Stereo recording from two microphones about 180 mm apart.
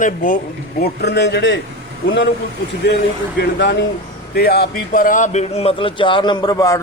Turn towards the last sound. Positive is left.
turn(degrees=20)  # may be behind; listen again after turning